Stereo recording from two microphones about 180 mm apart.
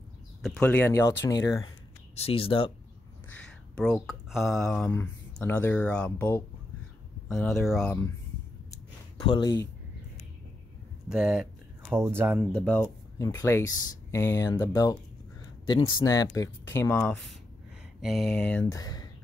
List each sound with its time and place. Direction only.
0.4 s speech: 5° left (ahead or behind)
2.1 s speech: 30° left (ahead or behind)
3.3 s speech: 5° left (ahead or behind)
9.2 s speech: 25° left (ahead or behind)
11.1 s speech: 5° right (ahead or behind)
12.4 s speech: 10° left (ahead or behind)
17.0 s speech: centre (ahead or behind)
18.7 s speech: 20° left (ahead or behind)